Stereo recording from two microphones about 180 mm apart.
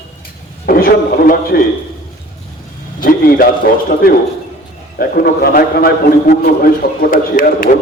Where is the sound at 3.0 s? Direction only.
55° left (ahead or behind).